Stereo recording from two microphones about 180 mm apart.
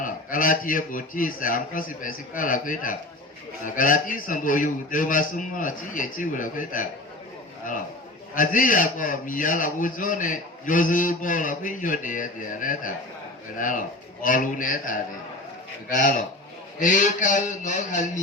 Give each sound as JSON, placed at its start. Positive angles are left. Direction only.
{"t": 0.0, "sound": "a man's voice", "side_deg": 50}
{"t": 8.4, "sound": "a man's voice", "side_deg": 50}